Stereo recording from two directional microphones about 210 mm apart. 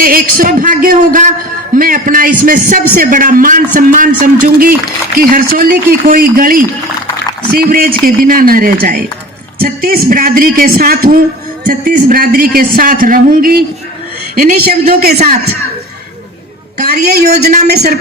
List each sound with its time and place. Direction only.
0.0 s a man's voice: 45° right (ahead or behind)
16.8 s a man's voice: 50° right (ahead or behind)